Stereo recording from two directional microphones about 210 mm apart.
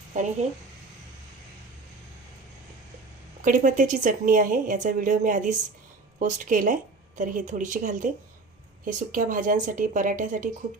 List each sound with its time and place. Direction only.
0.1 s a woman's voice: 35° right (ahead or behind)
3.4 s a woman's voice: 40° right (ahead or behind)